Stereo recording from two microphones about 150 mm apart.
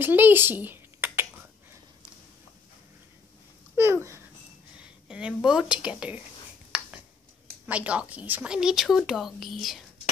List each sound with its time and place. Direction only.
0.0 s speech: 15° right (ahead or behind)
3.7 s a sound: 20° right (ahead or behind)
5.0 s a woman's voice: 5° right (ahead or behind)
6.7 s finger snapping: 5° right (ahead or behind)
7.6 s speech: 10° right (ahead or behind)